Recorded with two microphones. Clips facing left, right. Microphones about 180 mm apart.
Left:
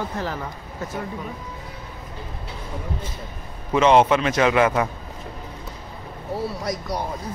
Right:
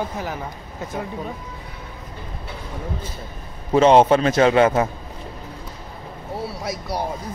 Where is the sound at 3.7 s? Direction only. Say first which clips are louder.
Right 3 dB; 35° right (ahead or behind).